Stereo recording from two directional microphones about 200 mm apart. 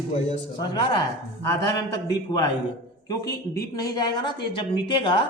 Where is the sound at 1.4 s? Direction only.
15° left (ahead or behind).